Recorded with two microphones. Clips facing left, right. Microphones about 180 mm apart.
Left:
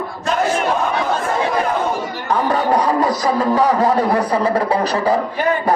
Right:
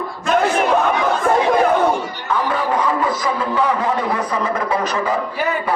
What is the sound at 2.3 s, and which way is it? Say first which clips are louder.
A man's voice: left 3 dB; 40° left (ahead or behind).